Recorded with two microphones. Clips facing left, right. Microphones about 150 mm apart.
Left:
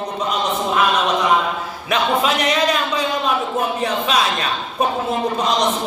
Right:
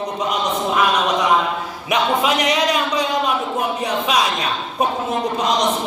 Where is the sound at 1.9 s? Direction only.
15° right (ahead or behind).